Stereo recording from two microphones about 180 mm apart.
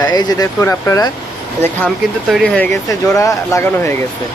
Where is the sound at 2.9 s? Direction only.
20° left (ahead or behind).